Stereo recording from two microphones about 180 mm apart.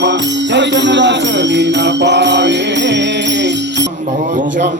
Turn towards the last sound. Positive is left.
turn(degrees=-75)  # may be behind; listen again after turning